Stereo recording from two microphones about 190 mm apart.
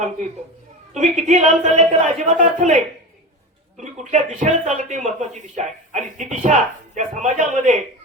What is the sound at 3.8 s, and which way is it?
Speech, 40° right (ahead or behind).